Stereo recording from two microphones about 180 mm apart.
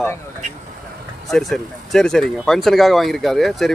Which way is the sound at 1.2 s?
Centre (ahead or behind).